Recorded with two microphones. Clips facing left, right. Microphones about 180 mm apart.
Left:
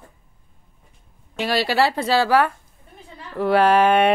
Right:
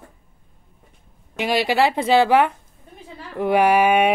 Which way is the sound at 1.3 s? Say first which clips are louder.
Right 1 dB; 20° right (ahead or behind).